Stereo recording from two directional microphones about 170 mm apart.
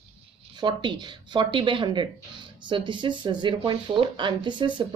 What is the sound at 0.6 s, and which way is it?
Speech, 25° right (ahead or behind).